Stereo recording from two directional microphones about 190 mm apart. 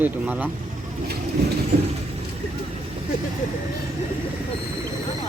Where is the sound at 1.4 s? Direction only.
60° right (ahead or behind).